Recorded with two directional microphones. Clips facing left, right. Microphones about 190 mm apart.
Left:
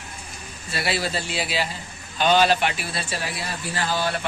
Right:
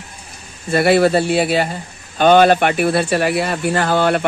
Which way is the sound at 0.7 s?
55° right (ahead or behind).